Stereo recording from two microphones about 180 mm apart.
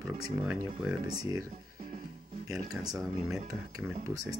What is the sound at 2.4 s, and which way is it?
Speech, 20° right (ahead or behind).